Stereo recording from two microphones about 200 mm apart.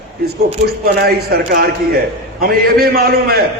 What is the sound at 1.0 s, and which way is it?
A man's voice, 50° right (ahead or behind).